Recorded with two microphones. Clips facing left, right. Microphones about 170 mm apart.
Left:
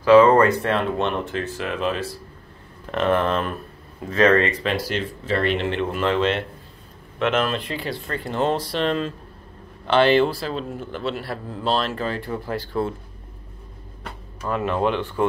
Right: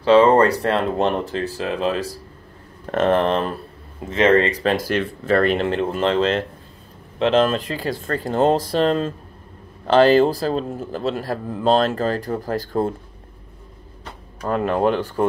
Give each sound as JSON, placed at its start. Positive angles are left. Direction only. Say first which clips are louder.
{"t": 0.0, "sound": "speech", "louder": "even", "side_deg": -30}
{"t": 14.4, "sound": "speech", "louder": "right 3 dB", "side_deg": -40}